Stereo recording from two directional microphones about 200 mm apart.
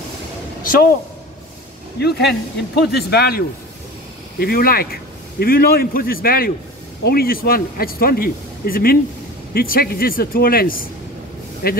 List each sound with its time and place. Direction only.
2.0 s a man's voice: 55° left (ahead or behind)